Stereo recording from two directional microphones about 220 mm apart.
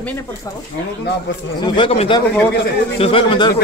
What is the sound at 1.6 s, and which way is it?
Speech, 25° left (ahead or behind).